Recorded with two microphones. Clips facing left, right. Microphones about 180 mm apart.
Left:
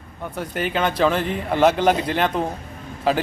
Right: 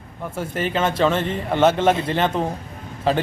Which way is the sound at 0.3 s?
Centre (ahead or behind).